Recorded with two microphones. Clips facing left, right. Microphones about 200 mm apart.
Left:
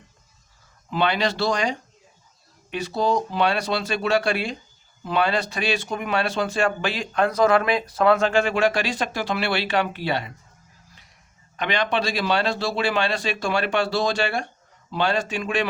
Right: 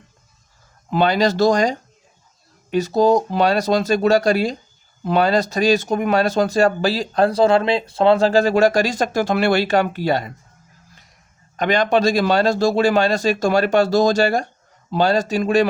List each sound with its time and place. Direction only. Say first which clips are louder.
0.9 s a man's voice: right 6 dB; 40° right (ahead or behind)
11.5 s a man's voice: right 7 dB; 45° right (ahead or behind)